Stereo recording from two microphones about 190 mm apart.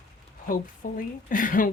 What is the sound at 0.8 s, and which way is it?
Speech, 45° left (ahead or behind).